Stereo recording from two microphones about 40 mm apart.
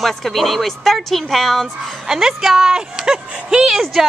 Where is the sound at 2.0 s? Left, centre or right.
Centre.